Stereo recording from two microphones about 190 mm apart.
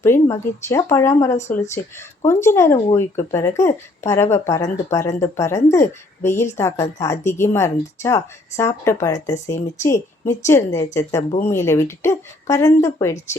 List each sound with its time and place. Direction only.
0.0 s a woman's voice: 15° left (ahead or behind)